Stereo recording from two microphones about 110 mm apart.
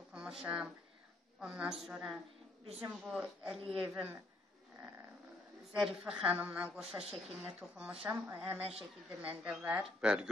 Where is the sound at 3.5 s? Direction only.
55° right (ahead or behind).